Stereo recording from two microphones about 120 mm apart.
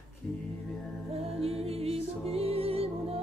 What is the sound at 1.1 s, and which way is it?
Music, 55° right (ahead or behind).